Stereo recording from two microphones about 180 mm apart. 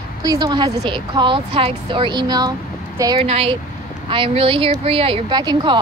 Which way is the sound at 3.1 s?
35° right (ahead or behind).